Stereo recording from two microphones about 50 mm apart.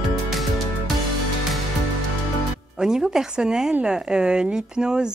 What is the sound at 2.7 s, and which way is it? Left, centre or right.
Speech, centre.